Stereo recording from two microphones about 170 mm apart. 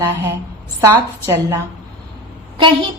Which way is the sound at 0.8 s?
15° right (ahead or behind).